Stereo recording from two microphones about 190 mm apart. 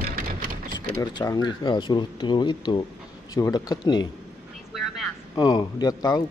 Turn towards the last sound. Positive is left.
turn(degrees=20)  # may be behind; listen again after turning